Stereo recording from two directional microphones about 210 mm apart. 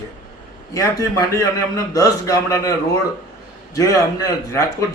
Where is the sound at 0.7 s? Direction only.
15° left (ahead or behind).